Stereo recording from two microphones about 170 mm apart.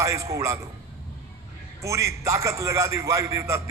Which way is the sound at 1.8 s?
15° right (ahead or behind).